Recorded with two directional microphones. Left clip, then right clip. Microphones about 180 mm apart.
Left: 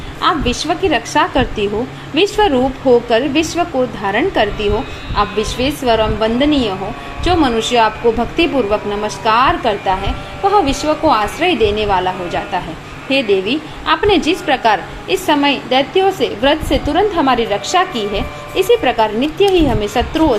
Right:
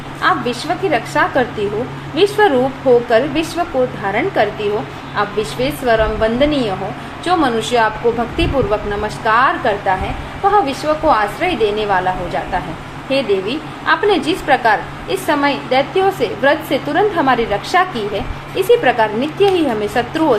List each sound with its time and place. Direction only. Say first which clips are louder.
0.2 s a woman's voice: left 1 dB; 25° left (ahead or behind)
13.1 s a woman's voice: left 2 dB; 25° left (ahead or behind)